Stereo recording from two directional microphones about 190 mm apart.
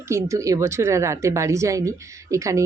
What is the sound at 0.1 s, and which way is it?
Speech, 15° right (ahead or behind).